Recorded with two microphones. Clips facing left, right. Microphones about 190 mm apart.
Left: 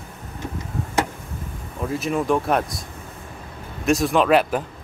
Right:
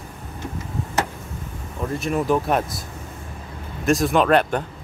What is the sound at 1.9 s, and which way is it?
Speech, centre (ahead or behind).